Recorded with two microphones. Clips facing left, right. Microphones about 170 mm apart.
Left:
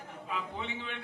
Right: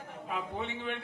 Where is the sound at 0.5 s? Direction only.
50° right (ahead or behind).